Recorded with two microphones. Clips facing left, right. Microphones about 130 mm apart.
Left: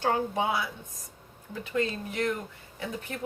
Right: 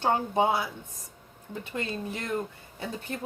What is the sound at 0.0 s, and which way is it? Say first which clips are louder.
Speech: right 2 dB; 30° right (ahead or behind).